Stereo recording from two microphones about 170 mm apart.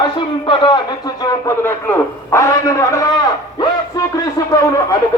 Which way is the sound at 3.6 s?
20° left (ahead or behind).